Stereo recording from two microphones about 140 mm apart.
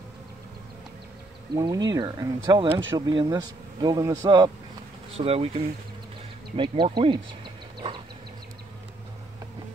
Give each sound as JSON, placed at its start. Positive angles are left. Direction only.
{"t": 1.5, "sound": "speech", "side_deg": -30}
{"t": 5.1, "sound": "speech", "side_deg": -45}